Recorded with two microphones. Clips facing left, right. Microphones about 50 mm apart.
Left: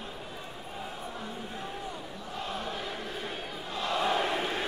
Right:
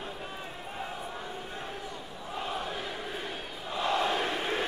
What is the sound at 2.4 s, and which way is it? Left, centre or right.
Crowd, centre.